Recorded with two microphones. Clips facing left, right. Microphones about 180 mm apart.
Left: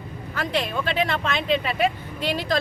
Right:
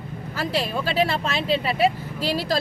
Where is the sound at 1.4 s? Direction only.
35° right (ahead or behind).